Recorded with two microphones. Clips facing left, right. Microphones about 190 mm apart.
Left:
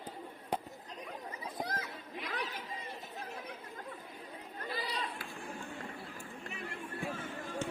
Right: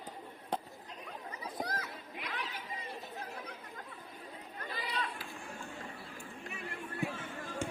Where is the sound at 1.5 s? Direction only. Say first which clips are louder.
Right 1 dB; 25° left (ahead or behind).